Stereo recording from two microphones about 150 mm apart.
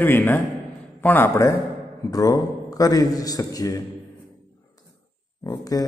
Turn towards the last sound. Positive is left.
turn(degrees=25)  # may be behind; listen again after turning